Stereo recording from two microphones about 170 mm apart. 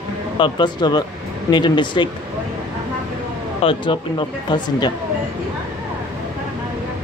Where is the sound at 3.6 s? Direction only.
30° left (ahead or behind).